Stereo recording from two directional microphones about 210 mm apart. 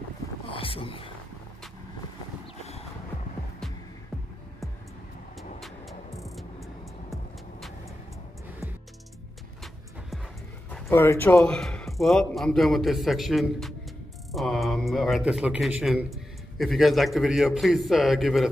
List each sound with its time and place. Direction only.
0.5 s a sound: 25° left (ahead or behind)
6.2 s music: centre (ahead or behind)
10.7 s a man's voice: 10° left (ahead or behind)